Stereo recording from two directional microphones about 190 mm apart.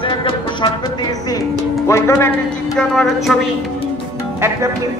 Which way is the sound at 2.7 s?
Centre (ahead or behind).